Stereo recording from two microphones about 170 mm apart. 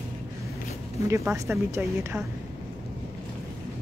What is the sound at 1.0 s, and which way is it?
Speech, 15° right (ahead or behind).